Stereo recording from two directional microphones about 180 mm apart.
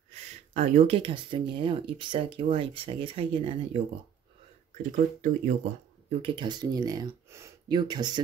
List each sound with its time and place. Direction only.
0.1 s speech: 35° right (ahead or behind)
4.9 s speech: 45° right (ahead or behind)
6.0 s speech: 30° right (ahead or behind)